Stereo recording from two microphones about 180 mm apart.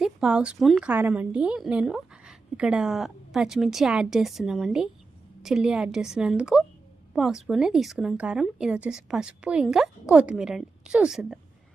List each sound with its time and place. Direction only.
0.0 s a woman's voice: 5° right (ahead or behind)